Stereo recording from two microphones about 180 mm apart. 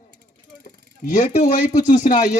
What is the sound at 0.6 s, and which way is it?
Speech, 45° left (ahead or behind).